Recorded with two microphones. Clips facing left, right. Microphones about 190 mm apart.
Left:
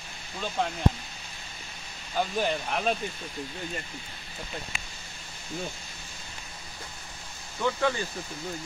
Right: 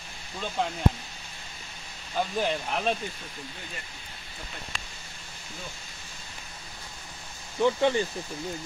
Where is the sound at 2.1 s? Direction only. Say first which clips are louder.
Even; centre (ahead or behind).